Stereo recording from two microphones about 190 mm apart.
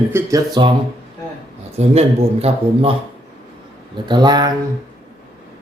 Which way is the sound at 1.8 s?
35° right (ahead or behind).